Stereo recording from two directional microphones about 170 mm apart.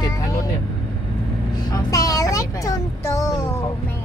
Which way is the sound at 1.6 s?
25° left (ahead or behind).